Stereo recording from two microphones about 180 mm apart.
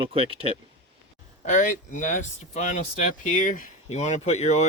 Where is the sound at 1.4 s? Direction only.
45° left (ahead or behind).